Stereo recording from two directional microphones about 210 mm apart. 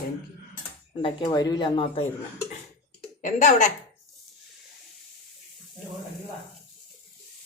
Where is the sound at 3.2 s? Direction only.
35° left (ahead or behind).